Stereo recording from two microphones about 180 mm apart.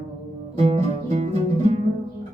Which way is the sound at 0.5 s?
40° right (ahead or behind).